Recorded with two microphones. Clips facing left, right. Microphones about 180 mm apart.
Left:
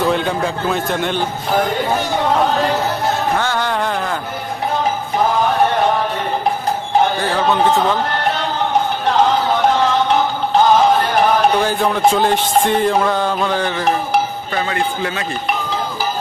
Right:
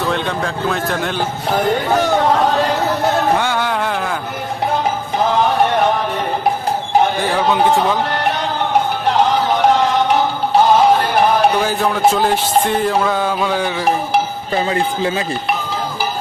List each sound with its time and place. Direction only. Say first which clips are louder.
0.0 s speech: left 2 dB; 5° left (ahead or behind)
3.4 s music: even; 10° right (ahead or behind)
11.6 s music: even; 5° right (ahead or behind)
14.5 s speech: right 3 dB; 30° right (ahead or behind)